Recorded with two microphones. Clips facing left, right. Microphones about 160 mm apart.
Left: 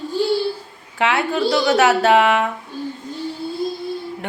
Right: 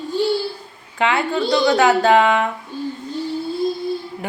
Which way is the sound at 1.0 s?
5° left (ahead or behind).